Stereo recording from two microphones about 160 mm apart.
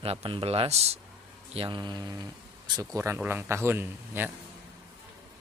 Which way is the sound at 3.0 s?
10° right (ahead or behind).